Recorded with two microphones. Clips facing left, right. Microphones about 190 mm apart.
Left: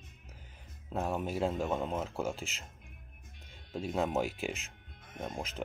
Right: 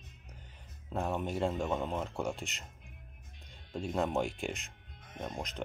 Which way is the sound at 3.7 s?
5° left (ahead or behind).